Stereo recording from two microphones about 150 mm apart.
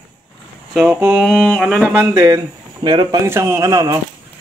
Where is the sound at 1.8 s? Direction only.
20° right (ahead or behind).